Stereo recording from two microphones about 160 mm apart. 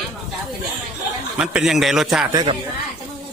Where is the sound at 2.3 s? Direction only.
25° right (ahead or behind).